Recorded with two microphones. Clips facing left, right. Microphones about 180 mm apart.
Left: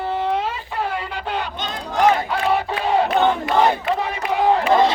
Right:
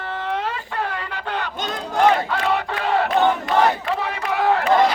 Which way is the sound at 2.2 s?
10° left (ahead or behind).